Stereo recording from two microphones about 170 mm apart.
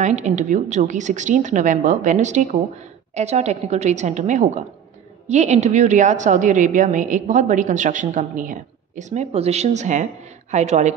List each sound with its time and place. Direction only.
0.0 s a woman's voice: 45° right (ahead or behind)